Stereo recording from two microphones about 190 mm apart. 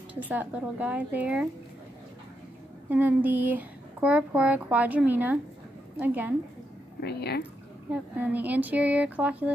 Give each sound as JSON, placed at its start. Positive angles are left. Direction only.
{"t": 0.3, "sound": "speech", "side_deg": -10}
{"t": 2.9, "sound": "speech", "side_deg": -10}
{"t": 7.0, "sound": "speech", "side_deg": 60}
{"t": 7.9, "sound": "speech", "side_deg": -10}